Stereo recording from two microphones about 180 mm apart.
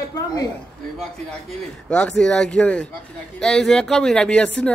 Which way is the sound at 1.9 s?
5° left (ahead or behind).